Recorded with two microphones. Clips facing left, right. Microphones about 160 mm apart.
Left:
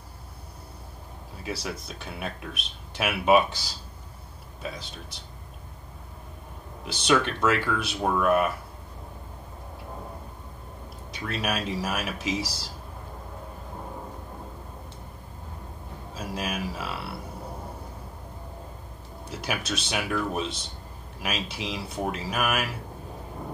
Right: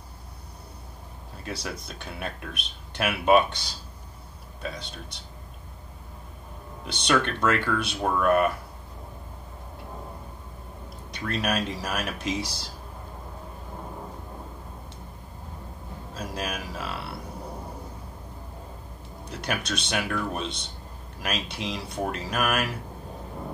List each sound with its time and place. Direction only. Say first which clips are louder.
1.3 s speech: left 1 dB; 5° left (ahead or behind)
6.8 s speech: left 1 dB; 5° left (ahead or behind)
11.1 s speech: right 2 dB; centre (ahead or behind)
16.2 s speech: left 1 dB; centre (ahead or behind)
19.3 s speech: right 1 dB; 5° left (ahead or behind)